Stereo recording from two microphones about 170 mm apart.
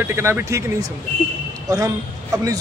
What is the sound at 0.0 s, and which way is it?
Speech, 15° right (ahead or behind).